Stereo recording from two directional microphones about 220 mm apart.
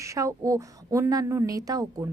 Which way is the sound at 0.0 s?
15° right (ahead or behind).